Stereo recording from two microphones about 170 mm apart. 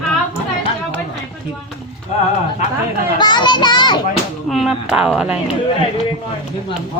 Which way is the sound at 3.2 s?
25° left (ahead or behind).